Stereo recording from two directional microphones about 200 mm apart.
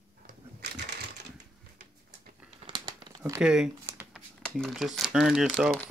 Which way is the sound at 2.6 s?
25° right (ahead or behind).